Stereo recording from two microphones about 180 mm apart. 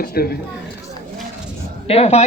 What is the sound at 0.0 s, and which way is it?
Speech, 60° left (ahead or behind).